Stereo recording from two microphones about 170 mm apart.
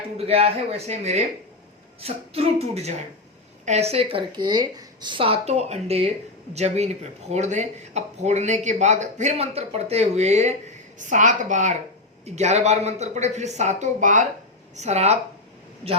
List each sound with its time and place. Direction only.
0.2 s a woman's voice: 35° right (ahead or behind)